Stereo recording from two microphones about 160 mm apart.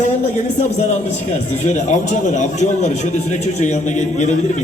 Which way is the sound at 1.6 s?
50° left (ahead or behind).